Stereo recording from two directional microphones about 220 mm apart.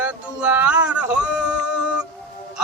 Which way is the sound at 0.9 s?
5° right (ahead or behind).